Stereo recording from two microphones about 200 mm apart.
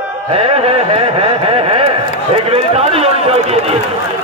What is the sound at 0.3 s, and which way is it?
A man's voice, 30° right (ahead or behind).